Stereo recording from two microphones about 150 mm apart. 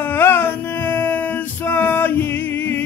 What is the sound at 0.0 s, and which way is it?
Male singing, 15° left (ahead or behind).